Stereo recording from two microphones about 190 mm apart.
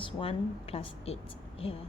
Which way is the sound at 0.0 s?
30° left (ahead or behind).